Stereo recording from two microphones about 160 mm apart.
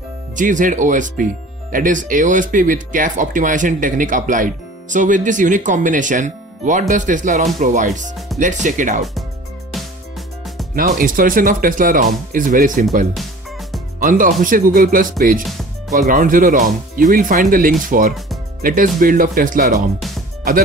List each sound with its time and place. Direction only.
0.4 s speech: 55° right (ahead or behind)
10.7 s speech: 60° right (ahead or behind)
13.1 s music: centre (ahead or behind)
13.9 s speech: 60° right (ahead or behind)